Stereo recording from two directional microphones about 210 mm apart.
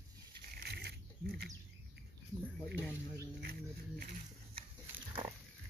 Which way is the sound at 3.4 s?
45° right (ahead or behind).